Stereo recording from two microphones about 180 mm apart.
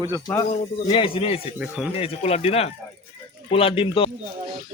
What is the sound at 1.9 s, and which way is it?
Speech, 35° left (ahead or behind).